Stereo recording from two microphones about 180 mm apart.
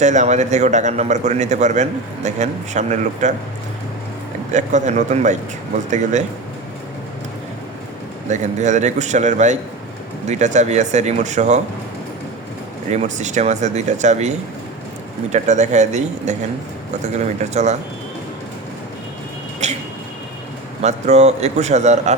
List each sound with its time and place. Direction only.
0.0 s a man's voice: 40° right (ahead or behind)
4.5 s a man's voice: 40° right (ahead or behind)
8.3 s a man's voice: 40° right (ahead or behind)
12.9 s a man's voice: 40° right (ahead or behind)
19.6 s a sound: 40° right (ahead or behind)
20.8 s a man's voice: 40° right (ahead or behind)